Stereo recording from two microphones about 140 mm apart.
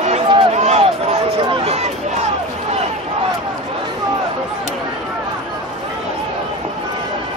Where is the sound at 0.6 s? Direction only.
50° right (ahead or behind).